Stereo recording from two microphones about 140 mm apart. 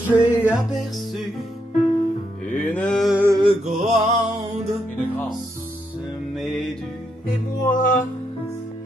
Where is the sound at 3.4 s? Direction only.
45° right (ahead or behind).